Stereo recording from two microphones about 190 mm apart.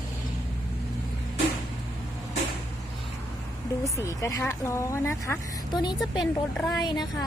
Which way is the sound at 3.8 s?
15° left (ahead or behind).